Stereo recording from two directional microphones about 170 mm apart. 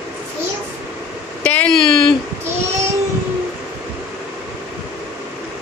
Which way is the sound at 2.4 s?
15° right (ahead or behind).